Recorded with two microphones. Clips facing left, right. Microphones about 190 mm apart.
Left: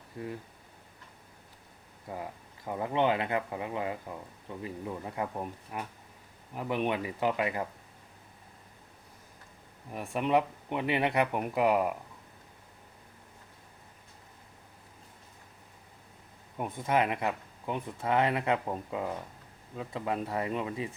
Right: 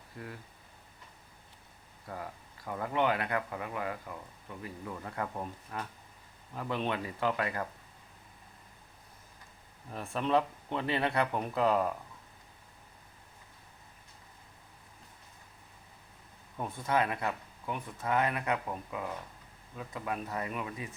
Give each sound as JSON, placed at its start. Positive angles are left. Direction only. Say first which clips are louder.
{"t": 0.2, "sound": "speech", "louder": "left 6 dB", "side_deg": 20}
{"t": 2.0, "sound": "speech", "louder": "left 3 dB", "side_deg": 20}
{"t": 9.9, "sound": "speech", "louder": "left 2 dB", "side_deg": 15}
{"t": 16.6, "sound": "speech", "louder": "left 2 dB", "side_deg": 15}